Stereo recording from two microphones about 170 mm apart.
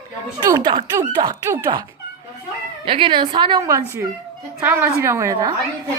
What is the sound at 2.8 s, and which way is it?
Speech, 30° right (ahead or behind).